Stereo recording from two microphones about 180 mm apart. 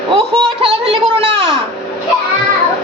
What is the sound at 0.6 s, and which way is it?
Speech, 30° right (ahead or behind).